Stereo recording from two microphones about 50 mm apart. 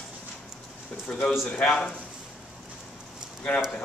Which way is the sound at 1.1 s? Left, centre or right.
Centre.